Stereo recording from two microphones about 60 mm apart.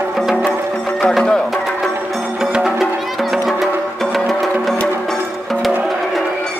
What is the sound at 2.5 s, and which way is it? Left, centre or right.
Music, centre.